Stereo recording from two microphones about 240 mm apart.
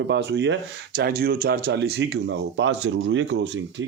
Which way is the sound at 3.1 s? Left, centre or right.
Right.